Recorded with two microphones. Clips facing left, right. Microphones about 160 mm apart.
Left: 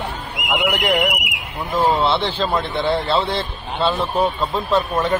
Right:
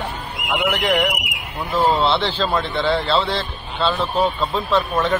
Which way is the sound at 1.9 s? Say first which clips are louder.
Even; centre (ahead or behind).